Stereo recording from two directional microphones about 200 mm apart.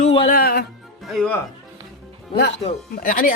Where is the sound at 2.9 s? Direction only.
45° left (ahead or behind).